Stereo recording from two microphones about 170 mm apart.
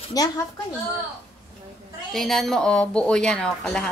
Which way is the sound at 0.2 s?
20° left (ahead or behind).